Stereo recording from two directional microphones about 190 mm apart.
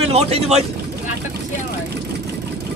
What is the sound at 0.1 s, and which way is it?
Speech, 35° right (ahead or behind).